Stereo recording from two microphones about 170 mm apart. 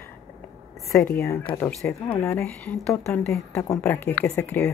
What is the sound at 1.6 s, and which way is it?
A woman's voice, 10° left (ahead or behind).